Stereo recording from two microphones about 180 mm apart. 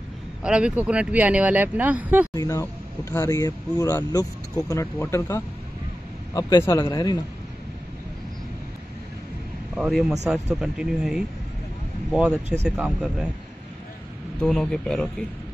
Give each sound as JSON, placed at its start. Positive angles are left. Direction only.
{"t": 0.4, "sound": "speech", "side_deg": -5}
{"t": 2.3, "sound": "a man's voice", "side_deg": 15}
{"t": 9.8, "sound": "speech", "side_deg": 0}
{"t": 14.4, "sound": "speech", "side_deg": 5}